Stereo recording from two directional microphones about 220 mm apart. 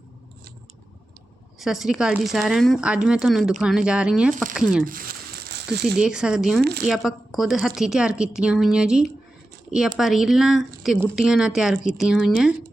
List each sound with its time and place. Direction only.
1.5 s a woman's voice: centre (ahead or behind)
4.9 s crumpling: 40° right (ahead or behind)
6.0 s a woman's voice: 5° right (ahead or behind)